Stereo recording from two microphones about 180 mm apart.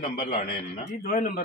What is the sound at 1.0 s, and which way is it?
Speech, 55° left (ahead or behind).